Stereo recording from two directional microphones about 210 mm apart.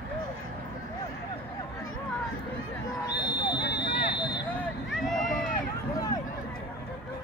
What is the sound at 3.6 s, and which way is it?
Vehicle, 50° left (ahead or behind).